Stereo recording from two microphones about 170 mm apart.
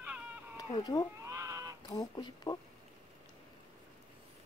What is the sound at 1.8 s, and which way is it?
Speech, 25° left (ahead or behind).